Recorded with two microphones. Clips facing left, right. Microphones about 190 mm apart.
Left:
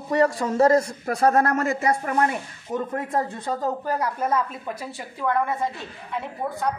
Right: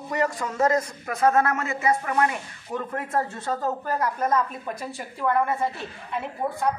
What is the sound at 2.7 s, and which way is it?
A woman's voice, 20° left (ahead or behind).